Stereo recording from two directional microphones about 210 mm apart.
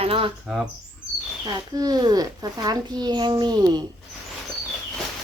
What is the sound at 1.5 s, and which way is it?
Speech, 20° right (ahead or behind).